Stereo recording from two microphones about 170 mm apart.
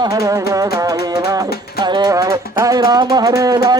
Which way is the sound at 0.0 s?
20° right (ahead or behind).